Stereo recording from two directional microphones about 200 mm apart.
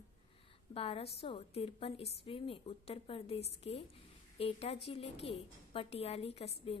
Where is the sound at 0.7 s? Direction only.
30° left (ahead or behind).